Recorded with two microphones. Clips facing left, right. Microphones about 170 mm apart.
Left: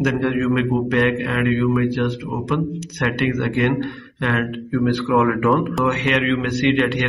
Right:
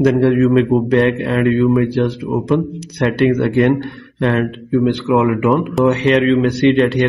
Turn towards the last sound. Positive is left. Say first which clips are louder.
# right 5 dB
turn(degrees=-35)  # may be behind; listen again after turning